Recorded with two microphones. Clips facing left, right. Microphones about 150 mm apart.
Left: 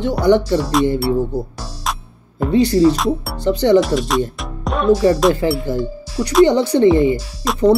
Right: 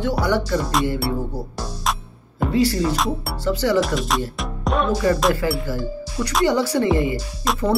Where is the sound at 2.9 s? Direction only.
Centre (ahead or behind).